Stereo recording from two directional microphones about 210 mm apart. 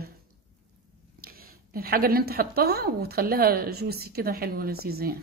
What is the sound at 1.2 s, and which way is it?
Speech, 45° right (ahead or behind).